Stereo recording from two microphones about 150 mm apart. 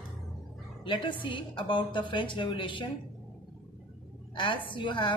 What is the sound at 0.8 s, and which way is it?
A woman's voice, 35° left (ahead or behind).